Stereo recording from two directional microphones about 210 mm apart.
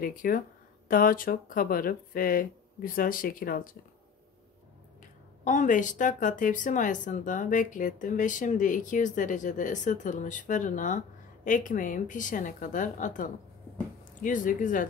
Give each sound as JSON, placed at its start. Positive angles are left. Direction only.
{"t": 0.0, "sound": "speech", "side_deg": 40}
{"t": 5.4, "sound": "speech", "side_deg": 35}